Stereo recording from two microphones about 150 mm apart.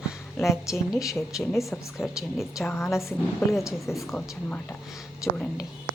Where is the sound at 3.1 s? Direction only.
5° right (ahead or behind).